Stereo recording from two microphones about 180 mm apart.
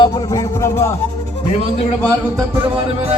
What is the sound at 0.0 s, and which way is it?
Music, 20° left (ahead or behind).